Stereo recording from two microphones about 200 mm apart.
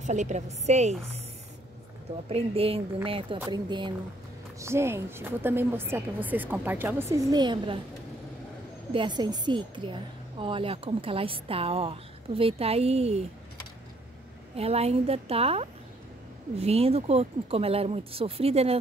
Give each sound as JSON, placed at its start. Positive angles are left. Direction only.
{"t": 0.0, "sound": "a woman's voice", "side_deg": -35}
{"t": 2.2, "sound": "a woman's voice", "side_deg": -30}
{"t": 8.9, "sound": "speech", "side_deg": -20}
{"t": 14.6, "sound": "a woman's voice", "side_deg": -30}